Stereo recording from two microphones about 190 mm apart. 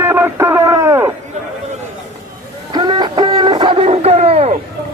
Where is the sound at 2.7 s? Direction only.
20° right (ahead or behind).